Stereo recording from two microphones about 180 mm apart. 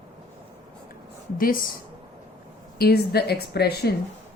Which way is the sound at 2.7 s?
60° left (ahead or behind).